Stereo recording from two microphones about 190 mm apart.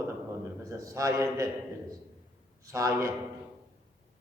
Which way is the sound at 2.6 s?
15° right (ahead or behind).